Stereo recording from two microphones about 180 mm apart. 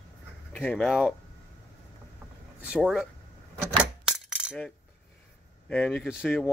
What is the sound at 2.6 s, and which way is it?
Speech, 5° right (ahead or behind).